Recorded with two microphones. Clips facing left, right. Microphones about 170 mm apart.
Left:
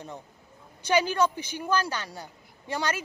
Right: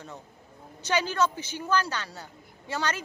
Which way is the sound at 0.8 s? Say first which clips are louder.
Left 2 dB; 15° left (ahead or behind).